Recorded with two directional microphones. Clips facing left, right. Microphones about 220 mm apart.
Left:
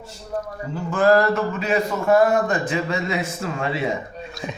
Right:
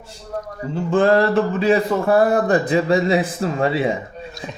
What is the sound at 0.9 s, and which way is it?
A man's voice, 30° right (ahead or behind).